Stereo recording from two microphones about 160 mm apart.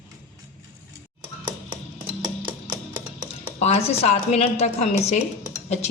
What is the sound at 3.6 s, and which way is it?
A woman's voice, 40° left (ahead or behind).